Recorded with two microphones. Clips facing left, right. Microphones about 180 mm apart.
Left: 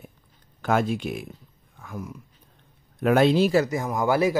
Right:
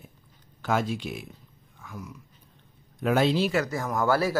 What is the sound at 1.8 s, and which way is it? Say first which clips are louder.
Dog: left 5 dB; 50° left (ahead or behind).